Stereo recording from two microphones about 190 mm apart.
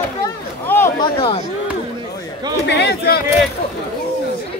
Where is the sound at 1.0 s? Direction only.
25° left (ahead or behind).